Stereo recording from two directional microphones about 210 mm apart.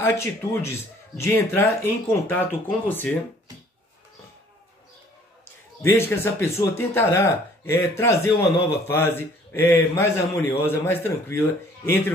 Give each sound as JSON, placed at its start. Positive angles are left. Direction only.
{"t": 0.0, "sound": "speech", "side_deg": 10}
{"t": 5.8, "sound": "speech", "side_deg": 10}